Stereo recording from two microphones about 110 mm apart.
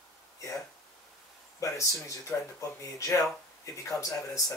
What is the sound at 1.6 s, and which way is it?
Speech, 30° left (ahead or behind).